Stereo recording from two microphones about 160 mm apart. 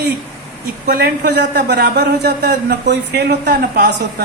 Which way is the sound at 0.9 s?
80° right.